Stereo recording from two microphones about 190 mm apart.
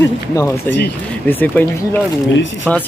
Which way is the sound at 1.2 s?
10° left (ahead or behind).